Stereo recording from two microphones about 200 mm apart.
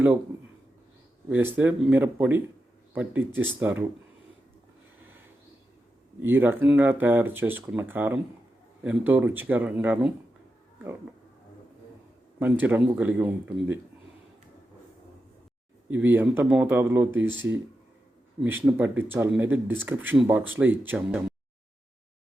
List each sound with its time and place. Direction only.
1.3 s speech: 10° right (ahead or behind)
6.2 s speech: 10° right (ahead or behind)
12.4 s speech: 10° right (ahead or behind)
15.9 s speech: 10° right (ahead or behind)